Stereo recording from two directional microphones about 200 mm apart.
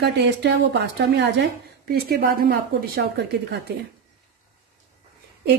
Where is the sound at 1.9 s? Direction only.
50° right (ahead or behind).